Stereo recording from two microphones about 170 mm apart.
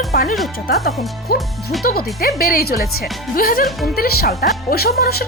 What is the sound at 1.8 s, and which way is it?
Speech, 65° left (ahead or behind).